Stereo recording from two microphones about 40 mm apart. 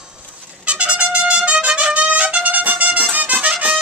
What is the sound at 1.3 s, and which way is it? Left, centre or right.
Music, right.